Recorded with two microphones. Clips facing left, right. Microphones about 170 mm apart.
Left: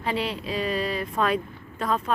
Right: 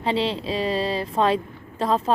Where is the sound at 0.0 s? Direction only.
25° right (ahead or behind).